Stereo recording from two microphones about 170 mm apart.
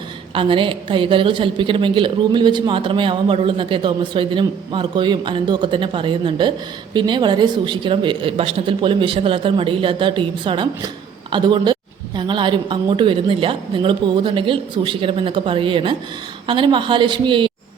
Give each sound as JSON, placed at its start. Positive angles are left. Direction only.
{"t": 0.3, "sound": "a woman's voice", "side_deg": -30}